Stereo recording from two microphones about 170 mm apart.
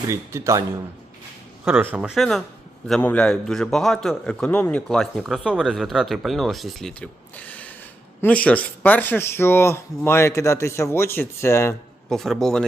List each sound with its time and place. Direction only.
0.1 s speech: 15° right (ahead or behind)
1.6 s a man's voice: 10° right (ahead or behind); by 11.8 s 15° left (ahead or behind)
12.0 s a man's voice: centre (ahead or behind)